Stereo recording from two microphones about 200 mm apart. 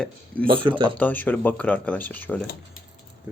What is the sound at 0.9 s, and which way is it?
Speech, 10° left (ahead or behind).